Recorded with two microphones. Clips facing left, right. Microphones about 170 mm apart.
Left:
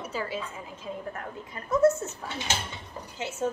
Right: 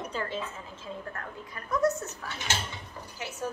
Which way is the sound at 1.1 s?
25° left (ahead or behind).